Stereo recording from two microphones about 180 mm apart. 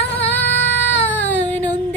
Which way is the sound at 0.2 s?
10° left (ahead or behind).